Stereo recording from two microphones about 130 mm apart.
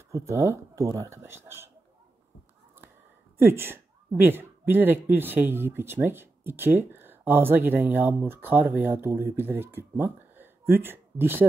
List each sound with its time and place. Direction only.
0.1 s speech: 20° right (ahead or behind)
3.3 s a woman's voice: 20° right (ahead or behind)